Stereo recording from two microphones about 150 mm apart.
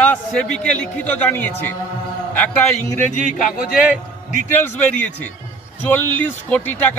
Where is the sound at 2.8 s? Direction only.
55° left (ahead or behind).